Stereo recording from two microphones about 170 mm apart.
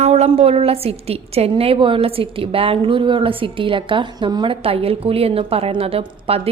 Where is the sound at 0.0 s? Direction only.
40° right (ahead or behind).